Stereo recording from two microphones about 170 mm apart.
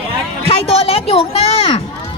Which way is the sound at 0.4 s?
35° left (ahead or behind).